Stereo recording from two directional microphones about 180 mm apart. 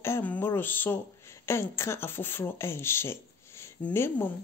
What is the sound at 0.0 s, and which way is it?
Speech, 10° left (ahead or behind).